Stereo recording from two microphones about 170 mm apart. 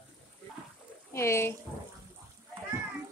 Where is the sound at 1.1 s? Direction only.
15° left (ahead or behind).